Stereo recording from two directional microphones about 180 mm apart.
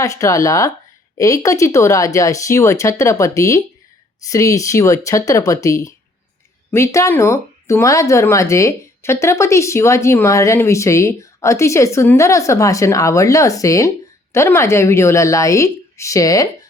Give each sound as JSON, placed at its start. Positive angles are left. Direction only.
{"t": 0.0, "sound": "speech", "side_deg": 20}